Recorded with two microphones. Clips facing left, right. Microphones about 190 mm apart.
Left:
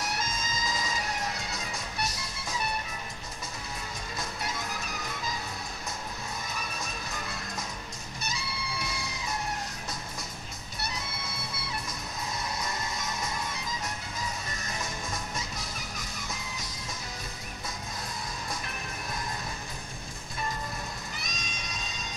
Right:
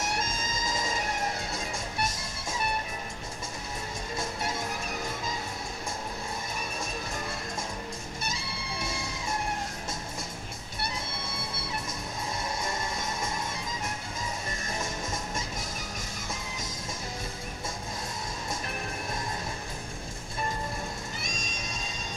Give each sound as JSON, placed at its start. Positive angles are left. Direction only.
{"t": 0.7, "sound": "music", "side_deg": -50}
{"t": 4.2, "sound": "music", "side_deg": -25}
{"t": 8.3, "sound": "music", "side_deg": -25}
{"t": 12.6, "sound": "music", "side_deg": -25}
{"t": 21.3, "sound": "music", "side_deg": -45}